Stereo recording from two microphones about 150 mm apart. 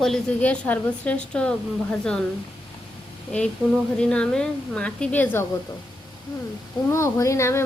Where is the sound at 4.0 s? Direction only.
5° left (ahead or behind).